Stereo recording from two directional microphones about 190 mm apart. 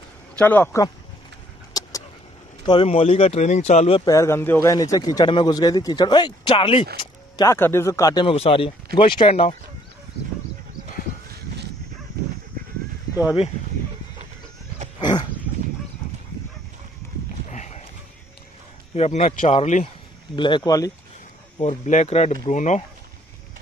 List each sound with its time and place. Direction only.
0.4 s speech: 10° left (ahead or behind)
1.7 s a sound: 20° left (ahead or behind)
2.6 s speech: 25° left (ahead or behind)
4.0 s speech: 15° left (ahead or behind); by 9.6 s 30° left (ahead or behind)
15.0 s dog: 25° left (ahead or behind)
17.5 s a sound: 40° left (ahead or behind)
18.9 s speech: 35° left (ahead or behind); by 20.9 s 20° left (ahead or behind)
21.5 s speech: 40° left (ahead or behind)